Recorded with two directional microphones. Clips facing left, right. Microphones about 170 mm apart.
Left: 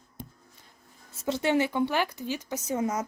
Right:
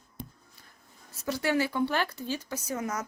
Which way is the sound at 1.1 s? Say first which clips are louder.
Left 3 dB; 25° left (ahead or behind).